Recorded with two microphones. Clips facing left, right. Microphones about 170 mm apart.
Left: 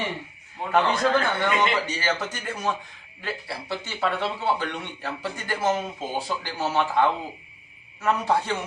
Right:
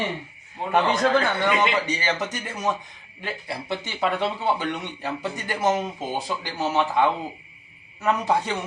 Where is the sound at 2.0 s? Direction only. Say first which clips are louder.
Right 1 dB; 15° right (ahead or behind).